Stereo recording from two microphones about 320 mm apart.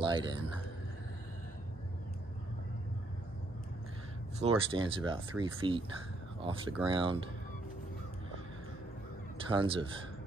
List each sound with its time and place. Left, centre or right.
0.0 s speech: centre
4.4 s speech: centre
9.5 s speech: centre